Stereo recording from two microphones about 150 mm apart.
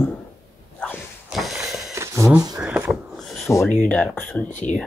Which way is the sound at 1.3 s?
Centre (ahead or behind).